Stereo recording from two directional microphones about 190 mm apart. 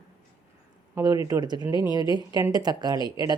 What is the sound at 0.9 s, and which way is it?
A woman's voice, 20° right (ahead or behind).